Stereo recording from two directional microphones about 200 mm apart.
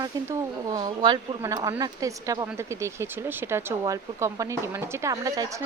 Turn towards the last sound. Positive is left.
turn(degrees=-15)  # may be behind; listen again after turning